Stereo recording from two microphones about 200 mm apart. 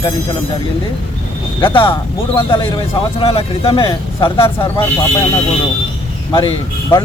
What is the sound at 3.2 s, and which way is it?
Speech, 25° left (ahead or behind).